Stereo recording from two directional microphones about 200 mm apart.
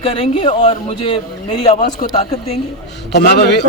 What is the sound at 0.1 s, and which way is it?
A man's voice, 25° left (ahead or behind).